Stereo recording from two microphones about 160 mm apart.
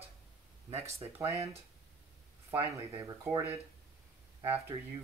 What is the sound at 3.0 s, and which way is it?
Speech, 20° right (ahead or behind).